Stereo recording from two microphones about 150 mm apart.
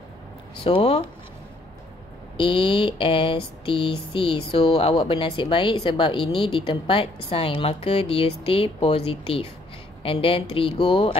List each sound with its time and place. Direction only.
0.7 s speech: 40° left (ahead or behind)
2.3 s speech: 35° left (ahead or behind)